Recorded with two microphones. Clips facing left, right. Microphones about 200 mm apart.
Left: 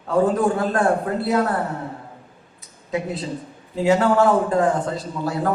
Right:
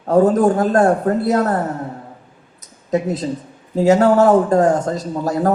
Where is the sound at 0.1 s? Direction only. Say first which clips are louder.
Right 5 dB; 40° right (ahead or behind).